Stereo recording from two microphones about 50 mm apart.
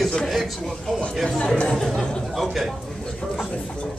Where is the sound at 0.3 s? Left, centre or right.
Centre.